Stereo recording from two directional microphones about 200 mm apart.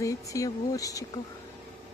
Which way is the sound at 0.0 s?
15° left (ahead or behind).